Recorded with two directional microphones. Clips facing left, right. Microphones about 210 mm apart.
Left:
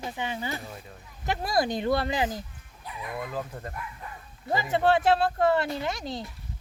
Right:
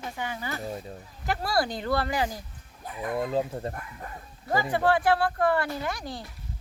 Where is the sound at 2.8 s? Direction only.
50° right (ahead or behind).